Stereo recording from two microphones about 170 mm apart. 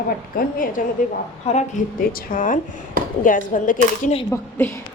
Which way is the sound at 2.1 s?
50° left (ahead or behind).